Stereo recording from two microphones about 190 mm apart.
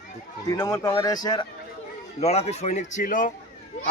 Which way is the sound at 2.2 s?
35° left (ahead or behind).